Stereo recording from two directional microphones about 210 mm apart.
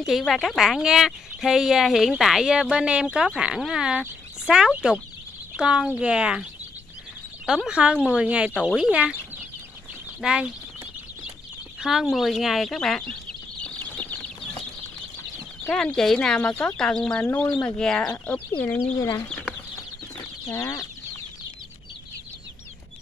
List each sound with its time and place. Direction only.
0.0 s speech: centre (ahead or behind)
7.4 s speech: 5° right (ahead or behind)
10.2 s speech: 5° right (ahead or behind)
11.8 s speech: centre (ahead or behind)
15.6 s speech: 5° left (ahead or behind)
20.4 s speech: 10° left (ahead or behind)